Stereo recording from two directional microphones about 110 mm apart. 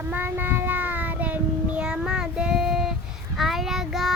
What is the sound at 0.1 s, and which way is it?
Child singing, 15° right (ahead or behind).